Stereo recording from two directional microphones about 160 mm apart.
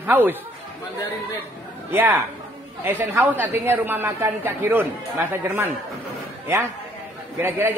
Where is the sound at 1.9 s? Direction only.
10° right (ahead or behind).